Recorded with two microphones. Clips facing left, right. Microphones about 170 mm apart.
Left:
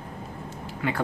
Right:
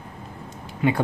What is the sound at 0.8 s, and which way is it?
Speech, 20° right (ahead or behind).